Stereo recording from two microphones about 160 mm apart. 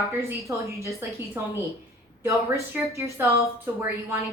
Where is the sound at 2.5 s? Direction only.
20° right (ahead or behind).